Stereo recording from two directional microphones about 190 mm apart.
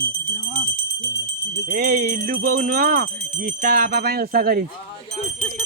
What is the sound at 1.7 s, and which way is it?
Music, 50° right (ahead or behind).